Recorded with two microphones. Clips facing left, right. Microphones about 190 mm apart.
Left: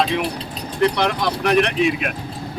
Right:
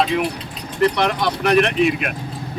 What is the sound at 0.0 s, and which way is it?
Speech, centre (ahead or behind).